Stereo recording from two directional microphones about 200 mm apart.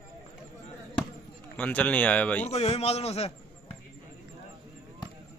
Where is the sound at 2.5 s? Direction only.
30° left (ahead or behind).